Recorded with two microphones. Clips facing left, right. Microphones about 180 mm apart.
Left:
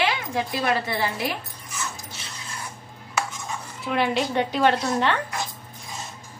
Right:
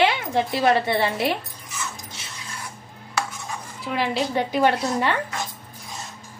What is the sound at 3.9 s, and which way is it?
A woman's voice, centre (ahead or behind).